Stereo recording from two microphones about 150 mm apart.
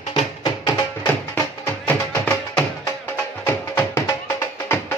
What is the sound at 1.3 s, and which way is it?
Music, 15° left (ahead or behind).